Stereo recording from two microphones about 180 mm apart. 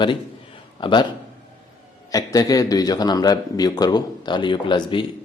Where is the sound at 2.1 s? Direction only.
20° left (ahead or behind).